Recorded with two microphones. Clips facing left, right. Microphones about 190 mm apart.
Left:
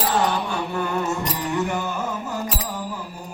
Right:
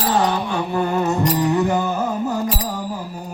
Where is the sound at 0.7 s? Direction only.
35° right (ahead or behind).